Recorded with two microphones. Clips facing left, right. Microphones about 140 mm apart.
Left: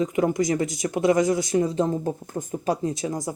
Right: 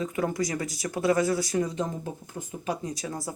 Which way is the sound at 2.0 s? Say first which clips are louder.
Left 8 dB; 45° left (ahead or behind).